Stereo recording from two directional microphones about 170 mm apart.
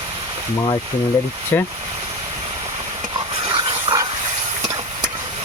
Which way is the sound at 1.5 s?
10° left (ahead or behind).